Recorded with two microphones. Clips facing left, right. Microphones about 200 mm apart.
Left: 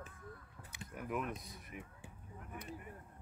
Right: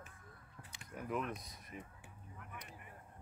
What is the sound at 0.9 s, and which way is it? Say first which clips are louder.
Speech: even; 5° left (ahead or behind).